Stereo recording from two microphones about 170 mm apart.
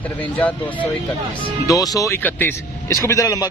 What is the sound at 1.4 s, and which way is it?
Speech, 20° left (ahead or behind).